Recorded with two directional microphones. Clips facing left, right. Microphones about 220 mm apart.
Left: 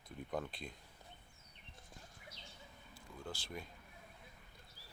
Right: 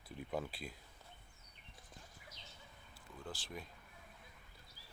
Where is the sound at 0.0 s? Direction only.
5° right (ahead or behind).